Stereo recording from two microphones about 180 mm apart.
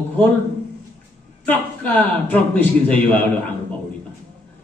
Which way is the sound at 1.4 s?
10° left (ahead or behind).